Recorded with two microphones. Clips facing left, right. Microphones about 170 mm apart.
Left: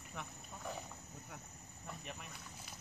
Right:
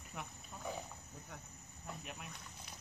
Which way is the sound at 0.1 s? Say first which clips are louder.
Even; 5° right (ahead or behind).